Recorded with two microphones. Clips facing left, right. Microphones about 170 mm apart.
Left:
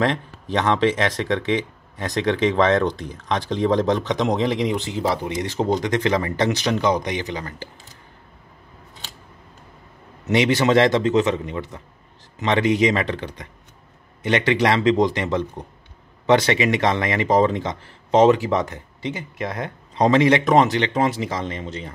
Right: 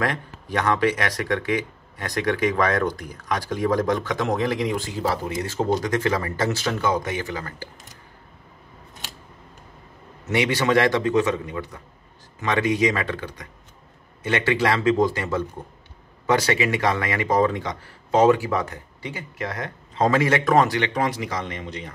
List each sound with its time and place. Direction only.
0.0 s speech: 25° left (ahead or behind)
10.2 s speech: 20° left (ahead or behind)